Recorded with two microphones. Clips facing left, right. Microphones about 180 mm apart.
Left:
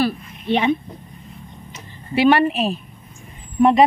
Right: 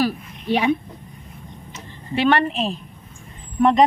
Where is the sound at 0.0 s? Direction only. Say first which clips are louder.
Left 1 dB; 10° right (ahead or behind).